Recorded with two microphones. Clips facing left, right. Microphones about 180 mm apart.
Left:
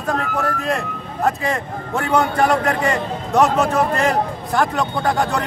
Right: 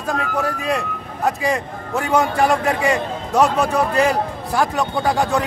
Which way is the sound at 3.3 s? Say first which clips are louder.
Left 1 dB; centre (ahead or behind).